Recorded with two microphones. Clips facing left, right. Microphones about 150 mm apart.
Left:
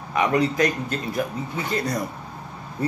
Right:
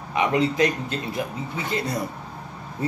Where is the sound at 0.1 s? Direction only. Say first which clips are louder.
Left 1 dB; 20° right (ahead or behind).